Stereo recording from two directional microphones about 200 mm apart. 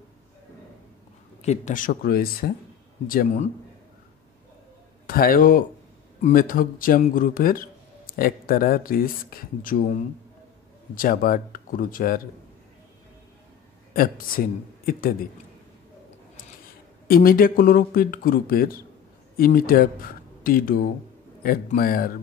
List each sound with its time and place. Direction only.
1.4 s speech: 35° left (ahead or behind)
5.0 s speech: 45° left (ahead or behind)
11.0 s speech: 45° left (ahead or behind)
13.9 s speech: 45° left (ahead or behind)
17.1 s speech: 45° left (ahead or behind)